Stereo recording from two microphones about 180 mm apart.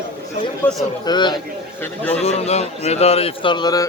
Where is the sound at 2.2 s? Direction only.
35° left (ahead or behind).